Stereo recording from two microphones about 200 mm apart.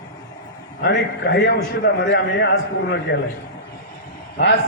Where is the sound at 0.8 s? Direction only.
60° left (ahead or behind).